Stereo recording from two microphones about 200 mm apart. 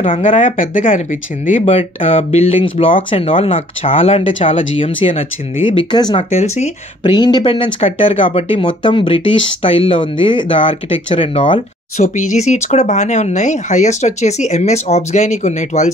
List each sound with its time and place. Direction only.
0.3 s speech: 35° left (ahead or behind)
6.3 s speech: 35° left (ahead or behind)
7.0 s speech: 20° left (ahead or behind)
12.0 s speech: 40° left (ahead or behind)